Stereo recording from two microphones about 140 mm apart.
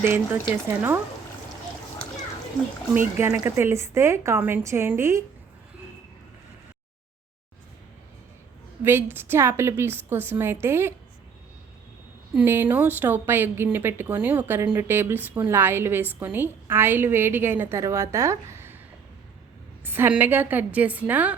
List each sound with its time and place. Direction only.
0.0 s a woman's voice: 15° right (ahead or behind)
3.2 s a woman's voice: 20° right (ahead or behind)
8.8 s a woman's voice: 15° right (ahead or behind)
12.3 s a woman's voice: 10° right (ahead or behind)
19.8 s a woman's voice: 15° right (ahead or behind)